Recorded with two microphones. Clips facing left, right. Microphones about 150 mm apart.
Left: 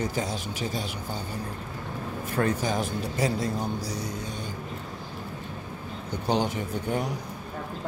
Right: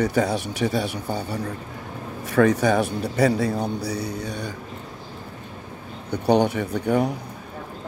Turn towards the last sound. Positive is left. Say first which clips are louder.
# right 7 dB
turn(degrees=-65)  # may be behind; listen again after turning